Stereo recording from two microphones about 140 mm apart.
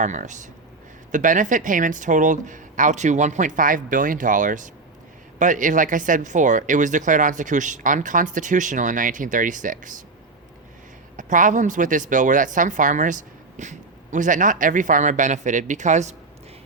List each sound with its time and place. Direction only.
0.0 s speech: 60° right (ahead or behind)
11.2 s speech: 65° right (ahead or behind)